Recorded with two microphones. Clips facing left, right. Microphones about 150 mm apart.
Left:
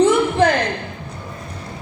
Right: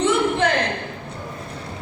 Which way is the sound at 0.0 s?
35° left (ahead or behind).